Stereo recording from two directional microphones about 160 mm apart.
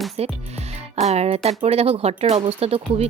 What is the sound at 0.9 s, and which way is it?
A woman's voice, 40° right (ahead or behind).